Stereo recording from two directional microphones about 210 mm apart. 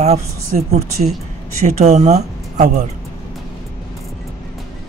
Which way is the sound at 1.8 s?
30° right (ahead or behind).